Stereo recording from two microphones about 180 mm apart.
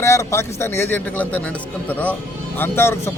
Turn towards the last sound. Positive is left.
turn(degrees=15)  # may be behind; listen again after turning